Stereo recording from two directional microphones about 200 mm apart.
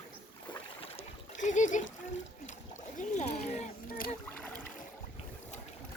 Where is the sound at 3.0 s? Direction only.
35° left (ahead or behind).